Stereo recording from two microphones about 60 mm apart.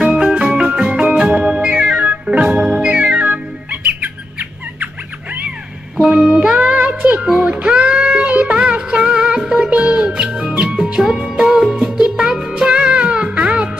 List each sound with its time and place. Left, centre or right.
0.0 s music: centre
0.6 s organ: centre
2.6 s music: centre
2.9 s music: centre
6.2 s music: centre